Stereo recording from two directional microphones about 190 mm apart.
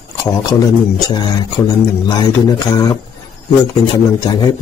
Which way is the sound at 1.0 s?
20° left (ahead or behind).